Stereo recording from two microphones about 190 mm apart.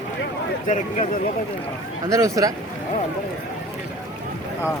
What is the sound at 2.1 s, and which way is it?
Speech, 15° right (ahead or behind).